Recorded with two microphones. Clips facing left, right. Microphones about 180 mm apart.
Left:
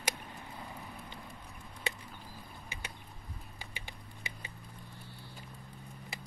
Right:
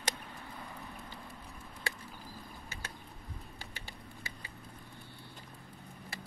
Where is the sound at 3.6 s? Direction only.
15° left (ahead or behind).